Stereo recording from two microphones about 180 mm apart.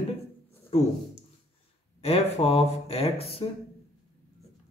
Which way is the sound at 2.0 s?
35° left (ahead or behind).